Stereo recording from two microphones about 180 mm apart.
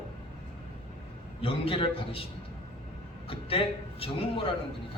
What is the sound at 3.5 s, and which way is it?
Speech, 30° left (ahead or behind).